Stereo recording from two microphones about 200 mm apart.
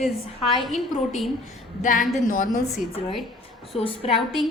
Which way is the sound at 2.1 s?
40° left (ahead or behind).